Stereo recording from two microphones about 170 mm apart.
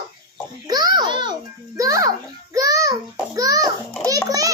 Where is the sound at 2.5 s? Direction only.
20° right (ahead or behind).